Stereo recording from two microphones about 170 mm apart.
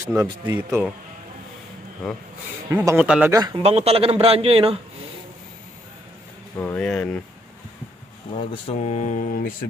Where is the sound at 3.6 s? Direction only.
35° right (ahead or behind).